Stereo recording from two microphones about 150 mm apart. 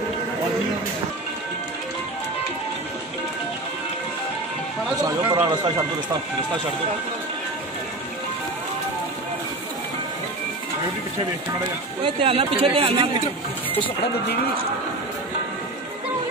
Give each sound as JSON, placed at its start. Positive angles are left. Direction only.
{"t": 5.0, "sound": "speech", "side_deg": -20}
{"t": 12.0, "sound": "speech", "side_deg": -40}